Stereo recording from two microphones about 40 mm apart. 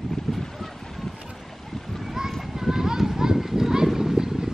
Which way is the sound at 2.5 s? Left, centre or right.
Centre.